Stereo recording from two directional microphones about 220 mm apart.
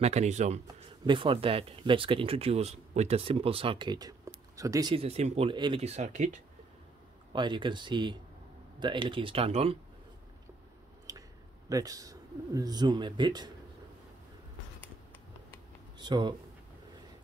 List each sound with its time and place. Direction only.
0.0 s speech: 30° right (ahead or behind)
7.3 s speech: 20° right (ahead or behind)
11.1 s a sound: 15° right (ahead or behind)
11.7 s speech: 15° right (ahead or behind)
16.0 s speech: 20° right (ahead or behind)